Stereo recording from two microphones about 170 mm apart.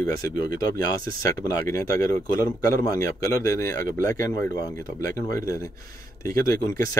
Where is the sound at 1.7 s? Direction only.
20° left (ahead or behind).